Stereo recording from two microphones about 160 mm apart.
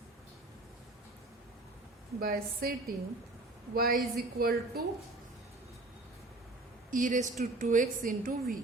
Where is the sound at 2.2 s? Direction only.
70° right (ahead or behind).